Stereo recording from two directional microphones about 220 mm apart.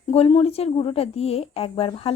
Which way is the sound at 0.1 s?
25° left (ahead or behind).